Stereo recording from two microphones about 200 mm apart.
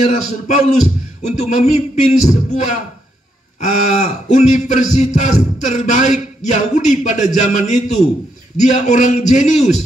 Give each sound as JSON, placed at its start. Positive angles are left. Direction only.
{"t": 0.0, "sound": "a man's voice", "side_deg": 40}